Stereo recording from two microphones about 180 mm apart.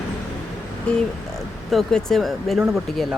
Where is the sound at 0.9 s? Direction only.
5° left (ahead or behind).